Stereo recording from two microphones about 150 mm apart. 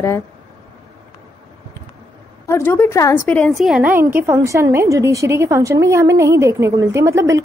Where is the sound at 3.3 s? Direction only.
5° left (ahead or behind).